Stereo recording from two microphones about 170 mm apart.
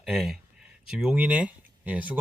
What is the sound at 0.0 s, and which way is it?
Speech, centre (ahead or behind).